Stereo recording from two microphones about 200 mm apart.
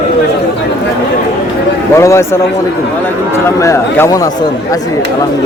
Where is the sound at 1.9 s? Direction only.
15° left (ahead or behind).